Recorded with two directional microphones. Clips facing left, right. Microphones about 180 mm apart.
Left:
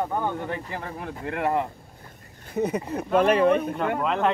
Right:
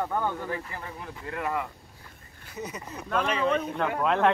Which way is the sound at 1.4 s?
35° left (ahead or behind).